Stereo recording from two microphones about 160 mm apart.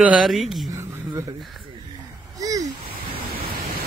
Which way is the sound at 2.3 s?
20° right (ahead or behind).